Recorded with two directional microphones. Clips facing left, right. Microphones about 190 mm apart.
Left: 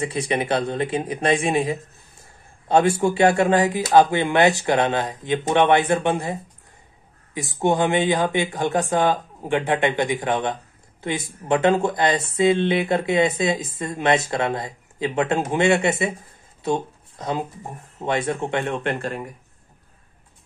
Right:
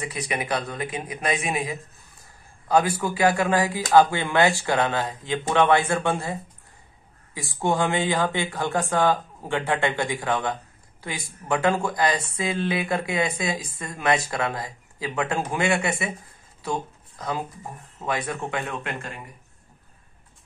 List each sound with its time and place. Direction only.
0.0 s speech: 30° left (ahead or behind)
7.3 s speech: 20° left (ahead or behind); by 19.3 s 40° left (ahead or behind)